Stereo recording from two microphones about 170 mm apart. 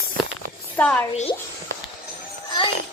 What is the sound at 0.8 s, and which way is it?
Speech, 10° left (ahead or behind).